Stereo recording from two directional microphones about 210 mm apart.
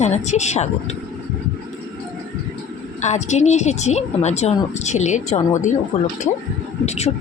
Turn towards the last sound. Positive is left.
turn(degrees=30)  # may be behind; listen again after turning